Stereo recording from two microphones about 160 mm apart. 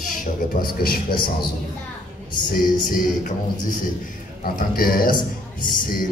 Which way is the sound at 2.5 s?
65° left (ahead or behind).